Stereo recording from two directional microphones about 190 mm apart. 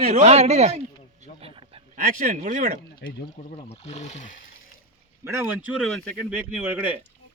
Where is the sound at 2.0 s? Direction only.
45° right (ahead or behind).